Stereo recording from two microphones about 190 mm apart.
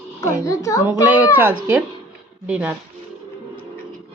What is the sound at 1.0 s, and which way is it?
Speech, 10° right (ahead or behind).